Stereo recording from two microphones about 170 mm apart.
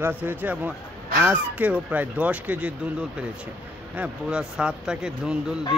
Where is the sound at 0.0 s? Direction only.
10° right (ahead or behind).